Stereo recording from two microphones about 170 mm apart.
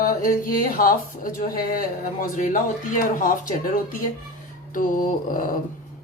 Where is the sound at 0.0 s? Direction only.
55° left (ahead or behind).